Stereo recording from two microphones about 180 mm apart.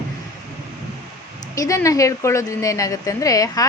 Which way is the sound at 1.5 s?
20° left (ahead or behind).